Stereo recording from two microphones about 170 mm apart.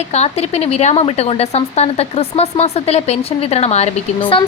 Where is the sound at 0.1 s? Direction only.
40° left (ahead or behind).